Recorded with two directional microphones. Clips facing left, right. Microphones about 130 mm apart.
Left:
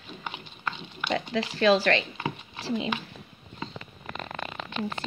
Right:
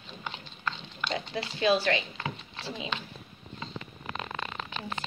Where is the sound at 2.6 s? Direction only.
65° left (ahead or behind).